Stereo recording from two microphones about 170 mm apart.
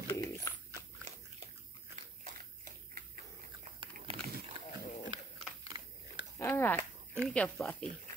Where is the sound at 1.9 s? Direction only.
50° right (ahead or behind).